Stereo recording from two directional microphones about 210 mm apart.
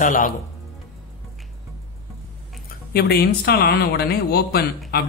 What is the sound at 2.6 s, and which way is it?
Speech, 50° left (ahead or behind).